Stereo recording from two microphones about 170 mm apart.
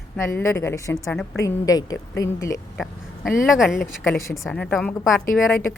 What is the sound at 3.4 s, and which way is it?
A woman's voice, centre (ahead or behind).